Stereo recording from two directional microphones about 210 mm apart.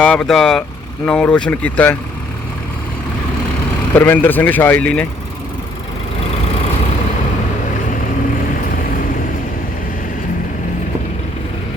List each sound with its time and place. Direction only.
0.0 s speech: 5° left (ahead or behind)
3.9 s speech: 10° left (ahead or behind)